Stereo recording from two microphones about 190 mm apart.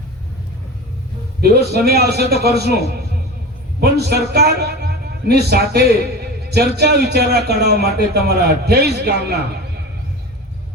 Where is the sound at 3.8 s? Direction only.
60° right (ahead or behind).